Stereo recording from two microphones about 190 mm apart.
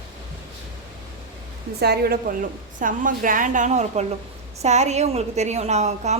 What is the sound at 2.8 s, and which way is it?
A woman's voice, 45° right (ahead or behind).